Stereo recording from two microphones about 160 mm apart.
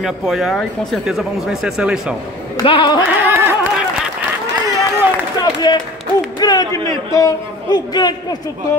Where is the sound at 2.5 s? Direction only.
30° left (ahead or behind).